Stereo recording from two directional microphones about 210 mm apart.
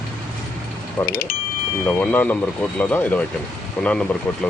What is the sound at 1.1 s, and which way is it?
Speech, 45° left (ahead or behind).